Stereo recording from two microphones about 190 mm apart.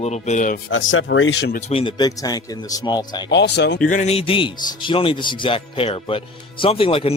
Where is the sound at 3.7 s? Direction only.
45° left (ahead or behind).